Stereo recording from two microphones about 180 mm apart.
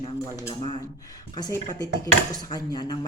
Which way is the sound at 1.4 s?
20° left (ahead or behind).